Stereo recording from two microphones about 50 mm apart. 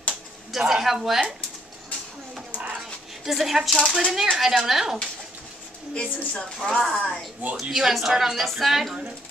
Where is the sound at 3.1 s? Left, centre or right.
Centre.